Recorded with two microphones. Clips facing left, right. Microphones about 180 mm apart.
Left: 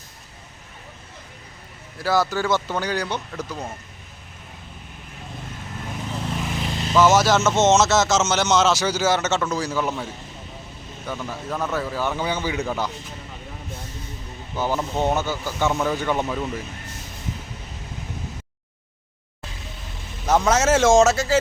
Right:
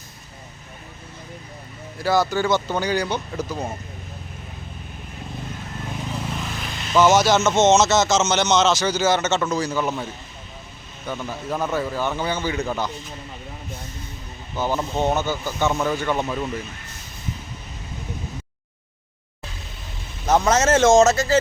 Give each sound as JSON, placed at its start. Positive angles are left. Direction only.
{"t": 2.0, "sound": "speech", "side_deg": 0}
{"t": 6.6, "sound": "vehicle", "side_deg": 30}
{"t": 6.9, "sound": "speech", "side_deg": 5}
{"t": 11.0, "sound": "speech", "side_deg": 0}
{"t": 14.5, "sound": "speech", "side_deg": 10}
{"t": 16.0, "sound": "speech", "side_deg": 10}
{"t": 16.2, "sound": "speech", "side_deg": 0}
{"t": 20.2, "sound": "vehicle", "side_deg": -10}
{"t": 20.5, "sound": "speech", "side_deg": 5}